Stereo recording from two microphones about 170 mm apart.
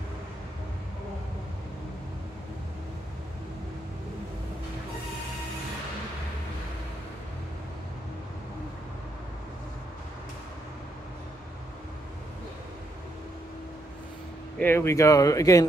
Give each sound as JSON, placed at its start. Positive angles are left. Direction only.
{"t": 14.6, "sound": "speech", "side_deg": 15}